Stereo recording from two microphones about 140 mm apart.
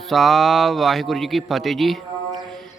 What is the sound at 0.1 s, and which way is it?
Speech, centre (ahead or behind).